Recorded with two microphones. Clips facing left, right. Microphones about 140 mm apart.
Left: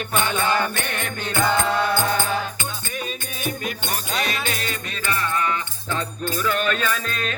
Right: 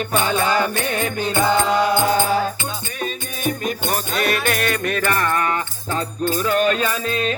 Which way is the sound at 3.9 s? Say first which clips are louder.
Right 5 dB; 60° right (ahead or behind).